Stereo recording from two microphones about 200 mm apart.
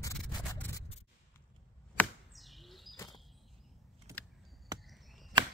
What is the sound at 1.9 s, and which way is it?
Arrow, centre (ahead or behind).